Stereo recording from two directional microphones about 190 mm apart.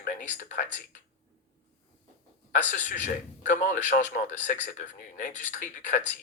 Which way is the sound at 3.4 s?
40° left (ahead or behind).